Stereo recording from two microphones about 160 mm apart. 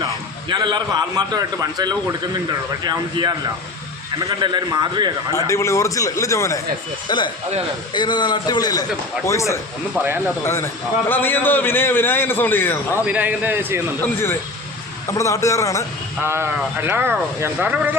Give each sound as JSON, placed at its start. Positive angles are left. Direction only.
{"t": 0.0, "sound": "a man's voice", "side_deg": -30}
{"t": 5.3, "sound": "a man's voice", "side_deg": 20}
{"t": 12.9, "sound": "speech", "side_deg": -10}
{"t": 15.0, "sound": "a man's voice", "side_deg": 20}
{"t": 16.2, "sound": "speech", "side_deg": -15}